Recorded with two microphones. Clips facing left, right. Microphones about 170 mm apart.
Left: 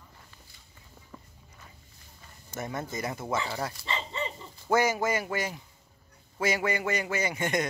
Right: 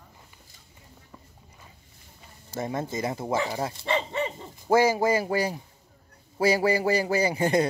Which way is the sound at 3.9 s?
60° right (ahead or behind).